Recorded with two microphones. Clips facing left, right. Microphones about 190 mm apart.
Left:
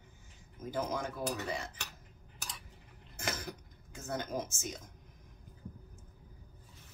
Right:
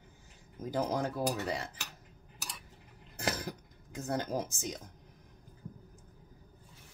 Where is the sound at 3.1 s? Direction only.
35° right (ahead or behind).